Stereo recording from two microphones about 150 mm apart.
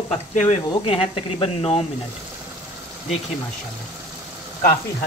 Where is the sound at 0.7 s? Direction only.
35° left (ahead or behind).